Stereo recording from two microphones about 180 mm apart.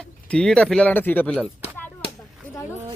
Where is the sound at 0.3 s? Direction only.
5° left (ahead or behind).